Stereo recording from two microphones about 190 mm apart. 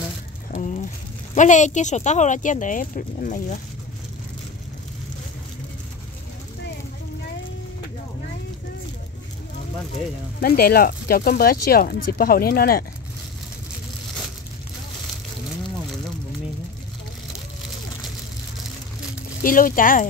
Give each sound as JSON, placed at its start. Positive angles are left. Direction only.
{"t": 0.5, "sound": "a sound", "side_deg": 40}
{"t": 1.3, "sound": "speech", "side_deg": 40}
{"t": 10.4, "sound": "speech", "side_deg": 50}
{"t": 19.4, "sound": "speech", "side_deg": 45}